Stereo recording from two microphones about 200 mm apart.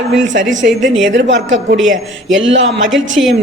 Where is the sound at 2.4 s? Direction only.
70° right (ahead or behind).